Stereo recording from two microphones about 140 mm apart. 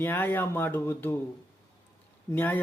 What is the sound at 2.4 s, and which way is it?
Speech, 15° left (ahead or behind).